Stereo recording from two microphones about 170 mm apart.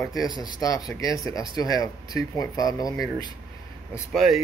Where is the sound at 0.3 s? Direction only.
20° left (ahead or behind).